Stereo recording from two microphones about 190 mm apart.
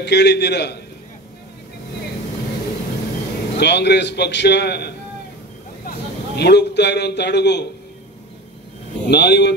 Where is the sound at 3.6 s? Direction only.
60° left (ahead or behind).